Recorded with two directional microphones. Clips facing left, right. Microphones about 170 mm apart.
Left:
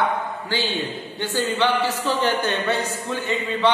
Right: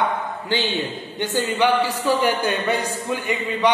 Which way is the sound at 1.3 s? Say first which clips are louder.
Right 2 dB; 10° right (ahead or behind).